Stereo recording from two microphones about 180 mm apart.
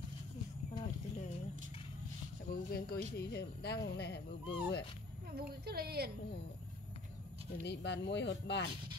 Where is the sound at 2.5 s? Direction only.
60° left (ahead or behind).